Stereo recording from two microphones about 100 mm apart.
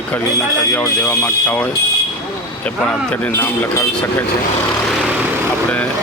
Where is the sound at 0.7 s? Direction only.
30° left (ahead or behind).